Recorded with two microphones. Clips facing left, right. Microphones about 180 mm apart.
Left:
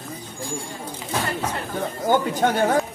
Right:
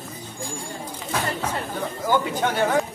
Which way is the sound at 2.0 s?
45° left (ahead or behind).